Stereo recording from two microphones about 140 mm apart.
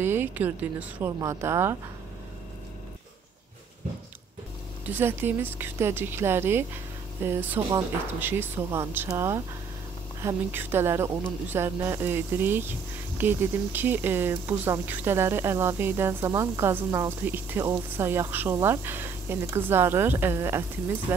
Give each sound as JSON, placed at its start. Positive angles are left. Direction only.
{"t": 0.0, "sound": "speech", "side_deg": -15}
{"t": 4.8, "sound": "speech", "side_deg": -15}